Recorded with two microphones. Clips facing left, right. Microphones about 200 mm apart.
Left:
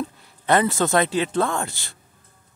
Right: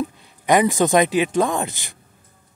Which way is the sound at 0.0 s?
15° right (ahead or behind).